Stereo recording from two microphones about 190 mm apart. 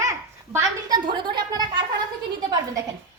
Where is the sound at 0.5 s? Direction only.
20° right (ahead or behind).